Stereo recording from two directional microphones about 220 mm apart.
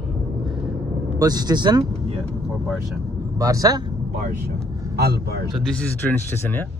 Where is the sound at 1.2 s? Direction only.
15° right (ahead or behind).